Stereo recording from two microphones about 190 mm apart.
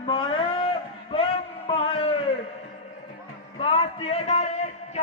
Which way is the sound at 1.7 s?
30° left (ahead or behind).